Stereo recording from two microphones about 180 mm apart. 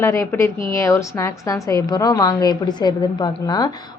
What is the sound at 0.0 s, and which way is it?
A woman's voice, 15° left (ahead or behind).